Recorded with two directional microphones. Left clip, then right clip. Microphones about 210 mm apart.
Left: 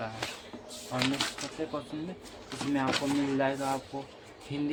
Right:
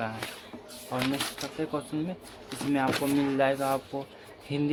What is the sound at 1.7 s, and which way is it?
Speech, 45° right (ahead or behind).